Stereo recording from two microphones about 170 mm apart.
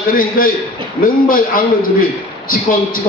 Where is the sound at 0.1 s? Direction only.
55° left (ahead or behind).